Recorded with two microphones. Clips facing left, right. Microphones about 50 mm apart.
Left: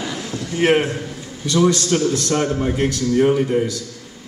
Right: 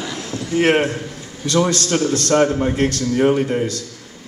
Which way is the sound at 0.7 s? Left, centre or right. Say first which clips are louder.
Left 1 dB; centre.